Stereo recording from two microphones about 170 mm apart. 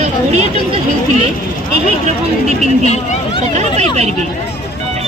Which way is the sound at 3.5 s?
40° right (ahead or behind).